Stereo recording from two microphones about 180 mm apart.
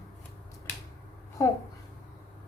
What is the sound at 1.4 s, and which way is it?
Speech, 20° left (ahead or behind).